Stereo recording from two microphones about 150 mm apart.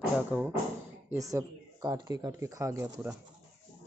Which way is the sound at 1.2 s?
25° right (ahead or behind).